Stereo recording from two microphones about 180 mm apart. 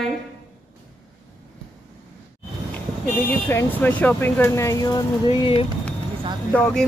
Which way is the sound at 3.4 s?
10° left (ahead or behind).